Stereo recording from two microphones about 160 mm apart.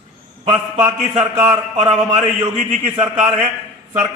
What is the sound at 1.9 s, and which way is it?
A man's voice, 45° right (ahead or behind).